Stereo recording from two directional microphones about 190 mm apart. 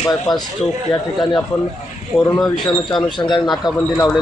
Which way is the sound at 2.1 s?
5° left (ahead or behind).